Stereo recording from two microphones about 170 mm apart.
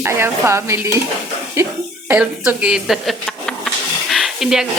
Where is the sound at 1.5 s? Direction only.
15° right (ahead or behind).